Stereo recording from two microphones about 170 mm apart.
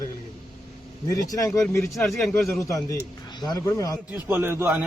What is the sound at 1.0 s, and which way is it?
Speech, 20° left (ahead or behind).